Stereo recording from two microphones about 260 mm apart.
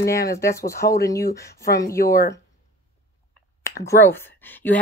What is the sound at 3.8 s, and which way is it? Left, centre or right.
Speech, centre.